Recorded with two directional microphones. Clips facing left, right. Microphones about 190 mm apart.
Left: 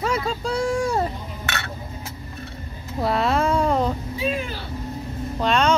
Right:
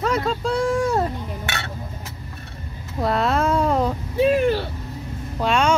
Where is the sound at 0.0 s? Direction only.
Centre (ahead or behind).